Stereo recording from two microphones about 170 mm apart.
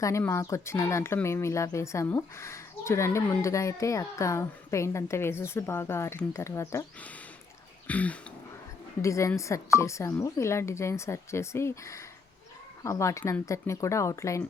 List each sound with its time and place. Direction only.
0.0 s speech: 15° left (ahead or behind)